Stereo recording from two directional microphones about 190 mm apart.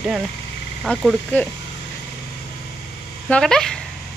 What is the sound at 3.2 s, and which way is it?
Speech, 5° left (ahead or behind).